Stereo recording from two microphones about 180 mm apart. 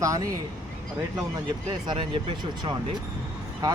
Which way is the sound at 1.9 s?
25° right (ahead or behind).